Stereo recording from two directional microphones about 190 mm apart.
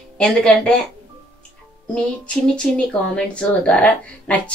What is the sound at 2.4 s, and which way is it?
A woman's voice, 5° left (ahead or behind).